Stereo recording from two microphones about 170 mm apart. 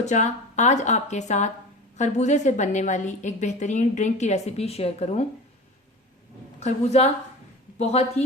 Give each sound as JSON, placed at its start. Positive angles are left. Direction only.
{"t": 0.0, "sound": "a woman's voice", "side_deg": 45}
{"t": 6.6, "sound": "a woman's voice", "side_deg": 40}